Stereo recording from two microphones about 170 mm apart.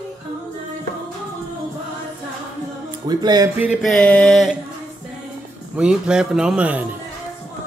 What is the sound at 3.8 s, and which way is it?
Speech, 5° left (ahead or behind).